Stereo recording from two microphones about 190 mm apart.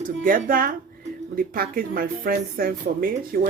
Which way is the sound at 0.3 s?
45° right (ahead or behind).